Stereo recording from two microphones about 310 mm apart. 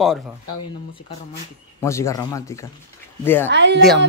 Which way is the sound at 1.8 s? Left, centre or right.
Centre.